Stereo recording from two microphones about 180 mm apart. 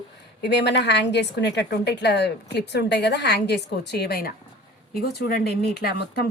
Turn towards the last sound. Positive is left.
turn(degrees=60)  # may be behind; listen again after turning